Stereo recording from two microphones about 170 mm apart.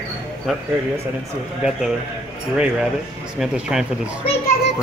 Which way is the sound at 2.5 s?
5° right (ahead or behind).